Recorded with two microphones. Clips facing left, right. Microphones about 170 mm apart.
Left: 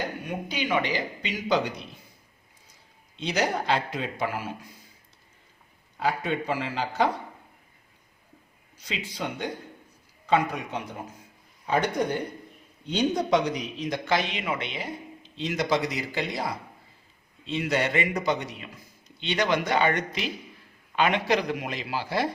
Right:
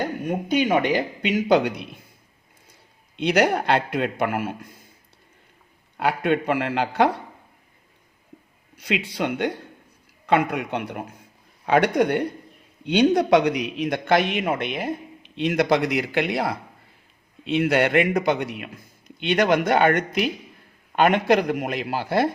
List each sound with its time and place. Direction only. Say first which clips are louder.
0.3 s a man's voice: right 9 dB; 50° right (ahead or behind)
3.2 s a man's voice: right 7 dB; 60° right (ahead or behind)
6.0 s a man's voice: right 6 dB; 65° right (ahead or behind)
8.8 s a man's voice: right 8 dB; 65° right (ahead or behind)